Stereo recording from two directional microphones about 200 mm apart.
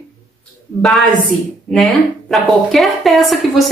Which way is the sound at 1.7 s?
Centre (ahead or behind).